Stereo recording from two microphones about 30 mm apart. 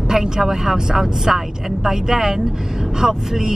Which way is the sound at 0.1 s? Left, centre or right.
Centre.